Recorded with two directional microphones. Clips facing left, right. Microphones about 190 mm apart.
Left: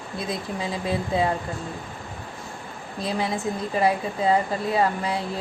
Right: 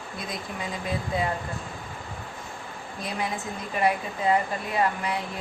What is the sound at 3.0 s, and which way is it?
Speech, 30° left (ahead or behind).